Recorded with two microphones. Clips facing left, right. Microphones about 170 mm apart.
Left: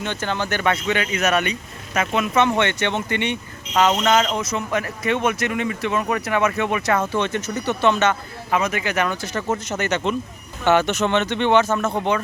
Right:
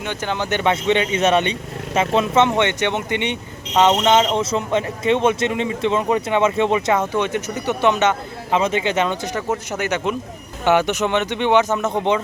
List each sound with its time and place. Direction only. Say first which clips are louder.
0.0 s speech: right 1 dB; 15° right (ahead or behind)
9.7 s speech: even; 10° right (ahead or behind)